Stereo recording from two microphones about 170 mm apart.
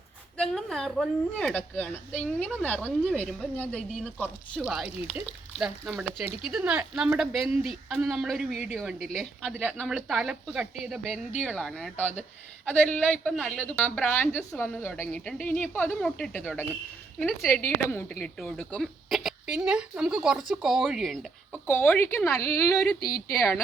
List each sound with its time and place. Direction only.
0.5 s a woman's voice: centre (ahead or behind)
4.6 s a woman's voice: 5° right (ahead or behind); by 15.0 s 15° left (ahead or behind)
15.0 s a woman's voice: centre (ahead or behind)
18.7 s a woman's voice: centre (ahead or behind)
21.7 s a woman's voice: 10° left (ahead or behind)